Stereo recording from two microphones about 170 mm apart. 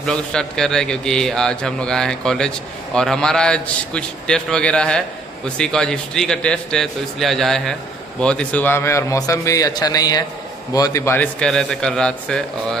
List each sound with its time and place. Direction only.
0.0 s a man's voice: 5° left (ahead or behind)